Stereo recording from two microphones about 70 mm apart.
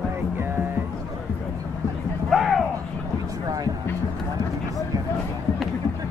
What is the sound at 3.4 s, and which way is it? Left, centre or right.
Music, right.